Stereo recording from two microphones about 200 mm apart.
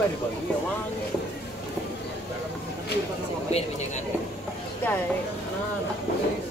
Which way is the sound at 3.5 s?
30° left (ahead or behind).